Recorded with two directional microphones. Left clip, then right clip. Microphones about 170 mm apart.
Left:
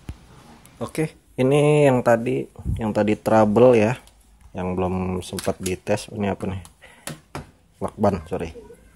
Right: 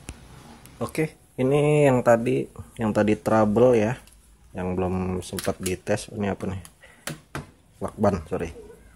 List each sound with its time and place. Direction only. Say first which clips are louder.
0.7 s speech: left 1 dB; centre (ahead or behind)
1.0 s speech: left 5 dB; 15° left (ahead or behind)
3.5 s speech: left 4 dB; 20° left (ahead or behind)